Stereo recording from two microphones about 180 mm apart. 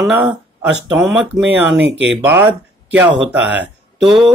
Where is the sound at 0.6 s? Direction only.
5° right (ahead or behind).